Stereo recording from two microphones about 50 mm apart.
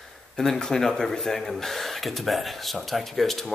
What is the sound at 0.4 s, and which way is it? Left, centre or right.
Speech, centre.